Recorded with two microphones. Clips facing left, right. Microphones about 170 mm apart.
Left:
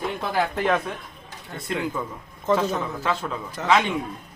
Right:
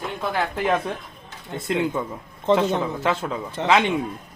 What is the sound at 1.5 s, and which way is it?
Speech, 25° right (ahead or behind).